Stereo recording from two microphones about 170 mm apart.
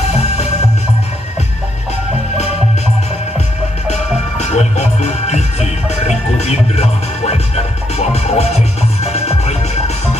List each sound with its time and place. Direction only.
3.9 s music: 40° left (ahead or behind)